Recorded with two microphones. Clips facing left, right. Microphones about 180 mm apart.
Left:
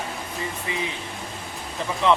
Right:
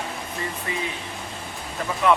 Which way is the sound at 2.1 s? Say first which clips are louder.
Even; 20° left (ahead or behind).